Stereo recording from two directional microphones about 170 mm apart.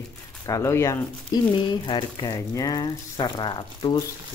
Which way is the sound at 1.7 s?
30° left (ahead or behind).